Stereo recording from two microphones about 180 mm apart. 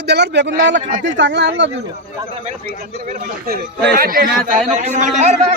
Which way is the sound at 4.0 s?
55° right (ahead or behind).